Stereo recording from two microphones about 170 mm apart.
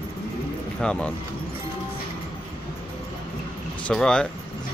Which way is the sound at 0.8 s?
5° left (ahead or behind).